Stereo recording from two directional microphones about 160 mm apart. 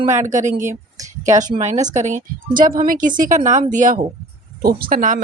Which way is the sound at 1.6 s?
45° right (ahead or behind).